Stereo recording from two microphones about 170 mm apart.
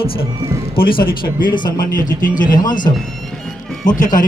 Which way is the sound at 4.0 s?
50° left (ahead or behind).